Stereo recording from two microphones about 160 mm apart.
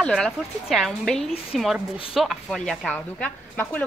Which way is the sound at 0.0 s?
5° left (ahead or behind).